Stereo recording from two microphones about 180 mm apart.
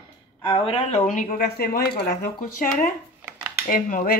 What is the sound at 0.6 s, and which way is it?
Speech, 35° left (ahead or behind).